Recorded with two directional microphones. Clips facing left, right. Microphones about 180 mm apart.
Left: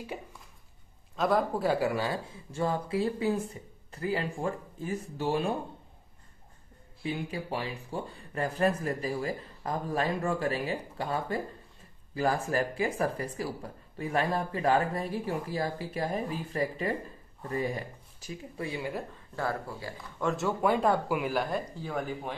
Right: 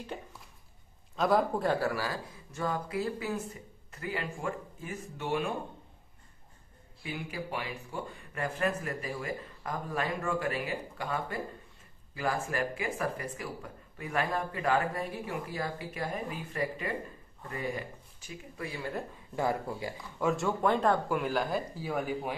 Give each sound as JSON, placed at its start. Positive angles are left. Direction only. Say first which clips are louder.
{"t": 1.1, "sound": "speech", "louder": "even", "side_deg": 0}
{"t": 1.8, "sound": "speech", "louder": "left 3 dB", "side_deg": 20}
{"t": 7.0, "sound": "speech", "louder": "left 4 dB", "side_deg": 30}
{"t": 19.3, "sound": "speech", "louder": "right 2 dB", "side_deg": -15}
{"t": 20.2, "sound": "speech", "louder": "left 1 dB", "side_deg": 0}